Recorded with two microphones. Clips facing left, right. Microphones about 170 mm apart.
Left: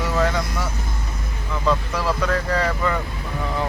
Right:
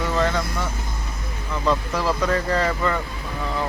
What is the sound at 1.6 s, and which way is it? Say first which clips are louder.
Speech: even; centre (ahead or behind).